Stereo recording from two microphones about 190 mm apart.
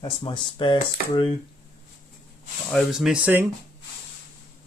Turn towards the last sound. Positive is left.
turn(degrees=-10)  # may be behind; listen again after turning